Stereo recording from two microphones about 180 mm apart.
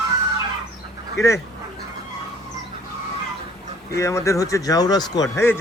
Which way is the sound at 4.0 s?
15° left (ahead or behind).